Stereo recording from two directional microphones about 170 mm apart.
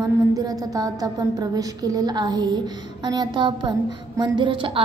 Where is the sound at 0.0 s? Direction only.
20° right (ahead or behind).